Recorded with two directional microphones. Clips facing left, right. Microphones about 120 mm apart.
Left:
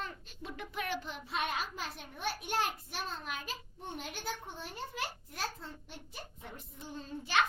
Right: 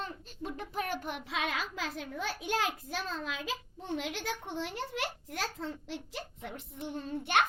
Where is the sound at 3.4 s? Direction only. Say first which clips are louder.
Right 5 dB; 90° right; by 7.5 s 60° right (ahead or behind).